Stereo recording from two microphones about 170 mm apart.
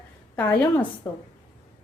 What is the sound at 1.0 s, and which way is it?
Speech, 25° left (ahead or behind).